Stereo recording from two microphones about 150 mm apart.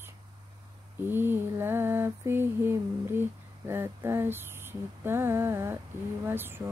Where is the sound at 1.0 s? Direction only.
15° right (ahead or behind).